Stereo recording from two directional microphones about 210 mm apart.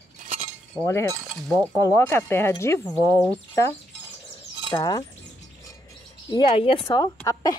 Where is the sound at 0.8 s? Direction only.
15° left (ahead or behind).